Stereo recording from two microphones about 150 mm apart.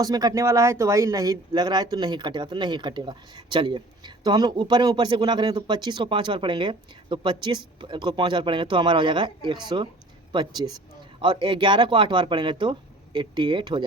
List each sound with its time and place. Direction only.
0.0 s speech: 25° right (ahead or behind)
11.2 s speech: 30° right (ahead or behind)